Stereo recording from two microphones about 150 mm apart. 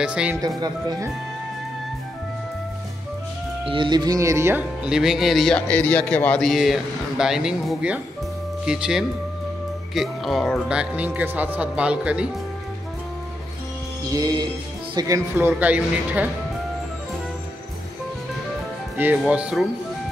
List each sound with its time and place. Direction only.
0.0 s speech: 5° right (ahead or behind)
0.6 s speech: 25° right (ahead or behind)
3.6 s speech: 35° right (ahead or behind); by 4.6 s 15° right (ahead or behind)
4.8 s a man's voice: 5° right (ahead or behind)
14.0 s speech: 25° right (ahead or behind); by 16.3 s 10° right (ahead or behind)
18.9 s speech: 10° right (ahead or behind)